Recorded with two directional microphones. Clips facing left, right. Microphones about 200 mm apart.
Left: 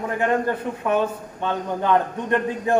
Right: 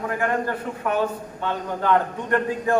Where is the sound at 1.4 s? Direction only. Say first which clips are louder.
Left 2 dB; 20° left (ahead or behind).